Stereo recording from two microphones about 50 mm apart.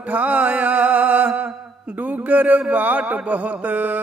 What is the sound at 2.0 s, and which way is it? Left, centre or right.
Speech, right.